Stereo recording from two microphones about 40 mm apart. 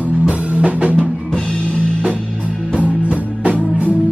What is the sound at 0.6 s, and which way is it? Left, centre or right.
Music, right.